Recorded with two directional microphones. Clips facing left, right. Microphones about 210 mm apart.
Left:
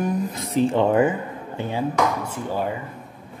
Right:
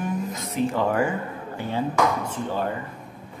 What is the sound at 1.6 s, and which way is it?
Speech, 15° left (ahead or behind).